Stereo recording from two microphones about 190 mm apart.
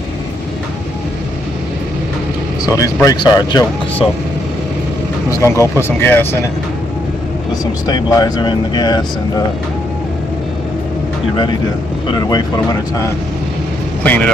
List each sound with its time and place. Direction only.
2.6 s speech: 15° left (ahead or behind)
5.4 s speech: 15° left (ahead or behind)
7.8 s speech: 20° left (ahead or behind)
12.2 s speech: 20° left (ahead or behind)
14.0 s speech: 10° left (ahead or behind)